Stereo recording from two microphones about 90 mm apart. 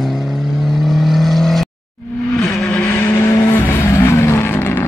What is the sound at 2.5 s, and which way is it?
Vehicle, 15° left (ahead or behind).